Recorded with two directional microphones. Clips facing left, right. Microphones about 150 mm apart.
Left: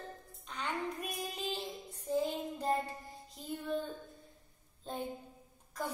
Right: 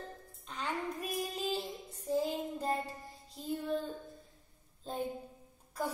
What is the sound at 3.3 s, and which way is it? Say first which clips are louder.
Music: right 3 dB; centre (ahead or behind).